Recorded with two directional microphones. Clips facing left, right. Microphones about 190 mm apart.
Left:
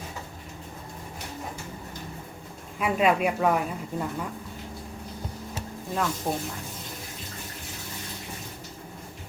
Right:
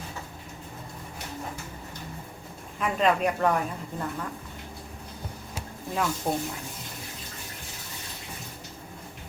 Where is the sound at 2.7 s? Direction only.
10° left (ahead or behind).